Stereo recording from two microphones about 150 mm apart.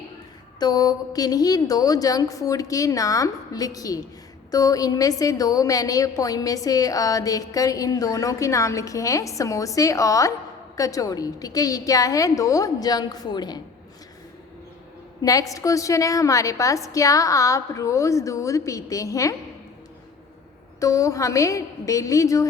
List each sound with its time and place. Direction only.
0.6 s a woman's voice: 25° left (ahead or behind)
15.2 s a woman's voice: 25° left (ahead or behind)
20.7 s a woman's voice: 20° left (ahead or behind)